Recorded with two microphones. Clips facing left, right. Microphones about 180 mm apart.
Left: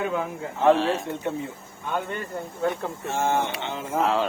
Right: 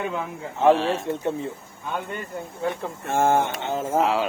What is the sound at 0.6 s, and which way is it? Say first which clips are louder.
Speech: right 1 dB; centre (ahead or behind).